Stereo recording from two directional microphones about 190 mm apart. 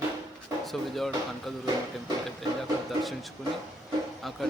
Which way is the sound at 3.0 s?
Centre (ahead or behind).